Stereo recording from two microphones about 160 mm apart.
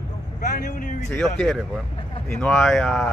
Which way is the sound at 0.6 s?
60° left (ahead or behind).